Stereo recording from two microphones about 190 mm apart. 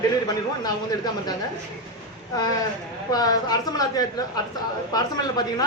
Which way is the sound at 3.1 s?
20° left (ahead or behind).